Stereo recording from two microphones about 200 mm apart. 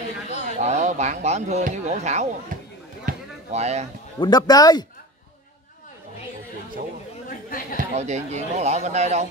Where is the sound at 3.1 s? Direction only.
35° right (ahead or behind).